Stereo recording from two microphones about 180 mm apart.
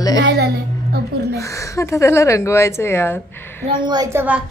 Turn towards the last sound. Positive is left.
turn(degrees=-20)  # may be behind; listen again after turning